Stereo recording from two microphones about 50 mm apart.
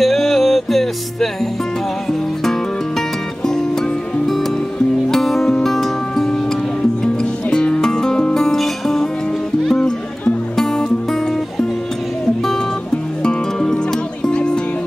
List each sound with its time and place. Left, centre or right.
0.0 s music: centre
3.4 s music: centre
7.5 s music: centre
13.2 s music: centre